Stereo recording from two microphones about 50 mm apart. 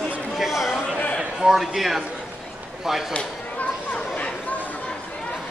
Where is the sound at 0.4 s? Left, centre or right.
Centre.